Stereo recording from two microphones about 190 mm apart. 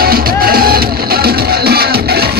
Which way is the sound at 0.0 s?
50° right (ahead or behind).